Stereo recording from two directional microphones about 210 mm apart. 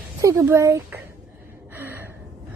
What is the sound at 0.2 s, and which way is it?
Speech, 15° right (ahead or behind).